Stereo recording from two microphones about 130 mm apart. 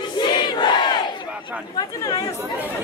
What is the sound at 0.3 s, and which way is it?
Battle cry, 35° left (ahead or behind).